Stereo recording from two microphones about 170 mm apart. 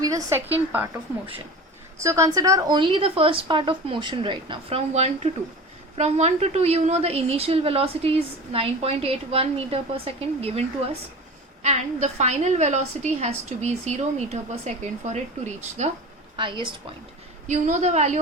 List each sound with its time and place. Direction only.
0.0 s a woman's voice: 20° right (ahead or behind)
2.0 s a woman's voice: 15° right (ahead or behind); by 15.9 s 40° right (ahead or behind)
16.4 s speech: 30° right (ahead or behind)
17.5 s a woman's voice: 45° right (ahead or behind)